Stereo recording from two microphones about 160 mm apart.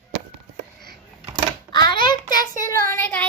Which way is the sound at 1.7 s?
30° left (ahead or behind).